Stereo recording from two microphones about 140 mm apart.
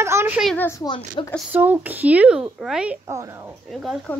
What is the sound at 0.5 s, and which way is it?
Speech, 20° left (ahead or behind).